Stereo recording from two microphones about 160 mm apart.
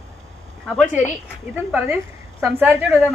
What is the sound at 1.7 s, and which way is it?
Speech, 10° right (ahead or behind).